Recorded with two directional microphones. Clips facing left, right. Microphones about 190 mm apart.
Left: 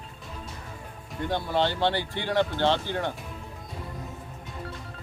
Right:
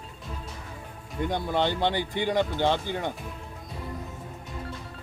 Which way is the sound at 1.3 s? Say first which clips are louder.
Left 1 dB; 15° right (ahead or behind).